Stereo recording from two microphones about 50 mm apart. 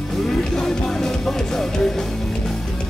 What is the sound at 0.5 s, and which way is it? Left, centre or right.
Music, centre.